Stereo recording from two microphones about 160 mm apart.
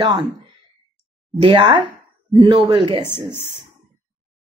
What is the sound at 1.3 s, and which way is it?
Speech, 30° right (ahead or behind).